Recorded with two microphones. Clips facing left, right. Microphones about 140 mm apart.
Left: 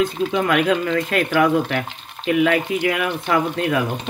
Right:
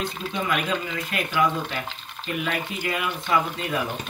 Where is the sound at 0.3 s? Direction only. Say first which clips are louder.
Left 5 dB; 85° left.